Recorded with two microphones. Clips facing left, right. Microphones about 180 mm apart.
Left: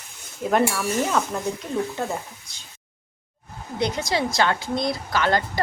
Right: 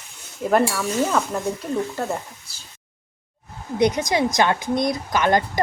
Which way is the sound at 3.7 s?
20° right (ahead or behind).